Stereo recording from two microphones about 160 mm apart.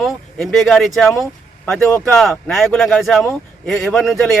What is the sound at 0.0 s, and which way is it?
Speech, centre (ahead or behind).